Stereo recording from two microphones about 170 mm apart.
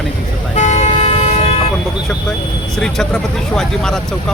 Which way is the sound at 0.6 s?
45° left (ahead or behind).